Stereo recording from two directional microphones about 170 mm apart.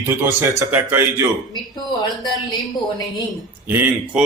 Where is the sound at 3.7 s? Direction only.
10° right (ahead or behind).